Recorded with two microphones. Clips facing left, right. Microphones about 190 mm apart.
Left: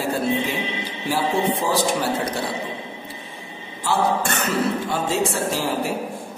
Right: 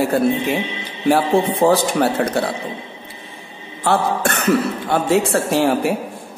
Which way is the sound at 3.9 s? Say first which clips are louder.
Right 3 dB; 60° right (ahead or behind).